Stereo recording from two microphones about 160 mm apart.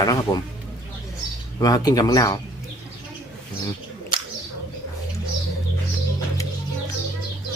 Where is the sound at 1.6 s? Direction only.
25° left (ahead or behind).